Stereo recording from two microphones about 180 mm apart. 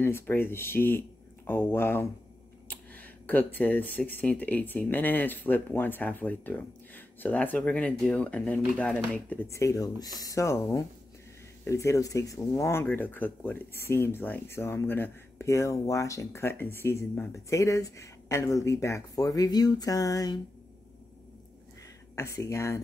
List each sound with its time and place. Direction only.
0.0 s speech: 15° left (ahead or behind)
22.1 s speech: 15° left (ahead or behind)